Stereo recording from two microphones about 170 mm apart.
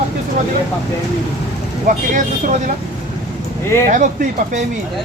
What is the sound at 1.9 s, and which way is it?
Speech, 50° right (ahead or behind).